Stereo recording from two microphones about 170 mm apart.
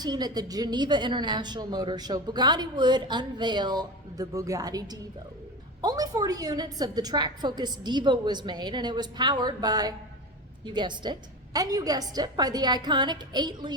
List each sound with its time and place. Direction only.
0.0 s a woman's voice: 25° right (ahead or behind)